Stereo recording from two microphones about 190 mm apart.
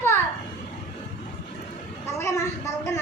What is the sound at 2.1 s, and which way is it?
Speech, 15° left (ahead or behind).